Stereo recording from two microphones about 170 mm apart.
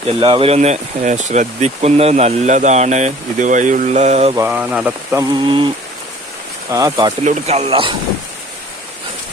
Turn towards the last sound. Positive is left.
turn(degrees=-30)  # may be behind; listen again after turning